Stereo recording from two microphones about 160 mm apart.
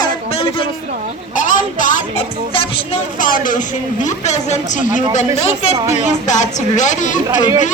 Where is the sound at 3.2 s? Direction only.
60° left (ahead or behind).